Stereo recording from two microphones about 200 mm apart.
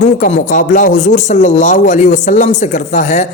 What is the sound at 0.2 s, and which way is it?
Speech, 40° left (ahead or behind).